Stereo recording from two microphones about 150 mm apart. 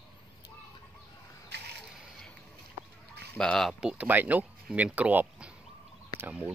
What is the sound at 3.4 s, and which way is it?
Speech, 5° left (ahead or behind).